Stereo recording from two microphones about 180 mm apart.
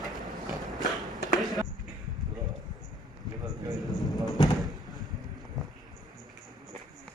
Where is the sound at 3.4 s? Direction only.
20° right (ahead or behind).